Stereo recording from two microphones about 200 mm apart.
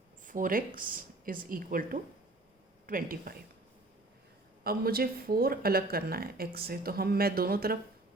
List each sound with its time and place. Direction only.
0.3 s speech: 40° right (ahead or behind)
0.9 s a sound: 45° right (ahead or behind)
1.5 s speech: 45° right (ahead or behind)
4.6 s speech: 50° right (ahead or behind)